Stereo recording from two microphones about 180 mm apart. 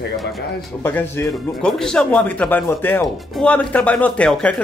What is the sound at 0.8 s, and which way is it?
Speech, 10° left (ahead or behind).